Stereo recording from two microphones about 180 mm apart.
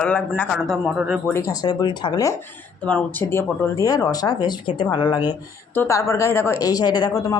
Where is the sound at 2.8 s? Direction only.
10° left (ahead or behind).